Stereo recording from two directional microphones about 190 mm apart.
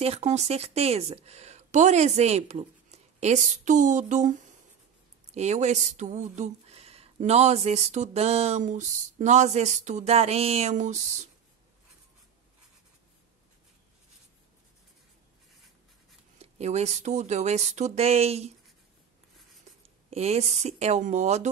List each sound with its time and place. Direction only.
0.0 s speech: 35° right (ahead or behind)
16.3 s speech: 35° right (ahead or behind)
20.1 s speech: 35° right (ahead or behind)